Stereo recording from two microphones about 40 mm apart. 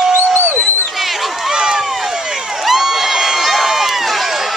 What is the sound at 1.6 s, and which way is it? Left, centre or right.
Run, centre.